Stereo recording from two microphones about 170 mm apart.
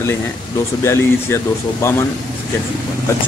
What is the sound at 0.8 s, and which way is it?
Speech, 15° left (ahead or behind).